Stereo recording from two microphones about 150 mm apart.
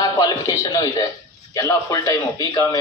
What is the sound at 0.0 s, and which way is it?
A man's voice, 25° left (ahead or behind).